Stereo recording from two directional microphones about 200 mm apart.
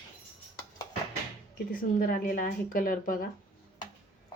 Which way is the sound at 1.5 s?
45° left (ahead or behind).